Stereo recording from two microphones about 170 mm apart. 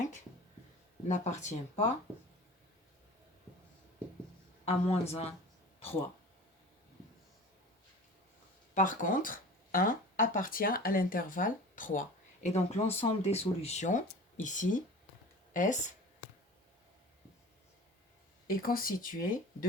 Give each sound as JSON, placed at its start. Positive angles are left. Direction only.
{"t": 1.0, "sound": "speech", "side_deg": 45}
{"t": 4.6, "sound": "a woman's voice", "side_deg": 35}
{"t": 8.7, "sound": "speech", "side_deg": 50}
{"t": 18.4, "sound": "speech", "side_deg": 60}